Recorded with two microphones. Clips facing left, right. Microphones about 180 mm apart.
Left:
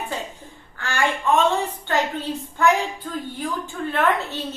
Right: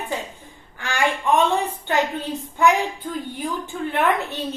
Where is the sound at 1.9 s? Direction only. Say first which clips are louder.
Right 1 dB; 15° right (ahead or behind).